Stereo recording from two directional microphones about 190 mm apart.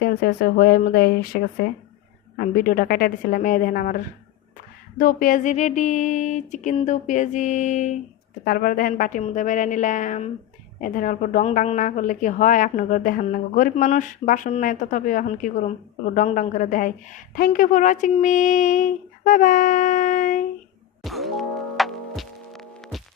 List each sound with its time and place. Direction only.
0.0 s a woman's voice: 55° left (ahead or behind)
21.0 s music: centre (ahead or behind)